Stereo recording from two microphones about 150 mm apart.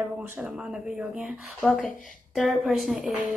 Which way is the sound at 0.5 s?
5° right (ahead or behind).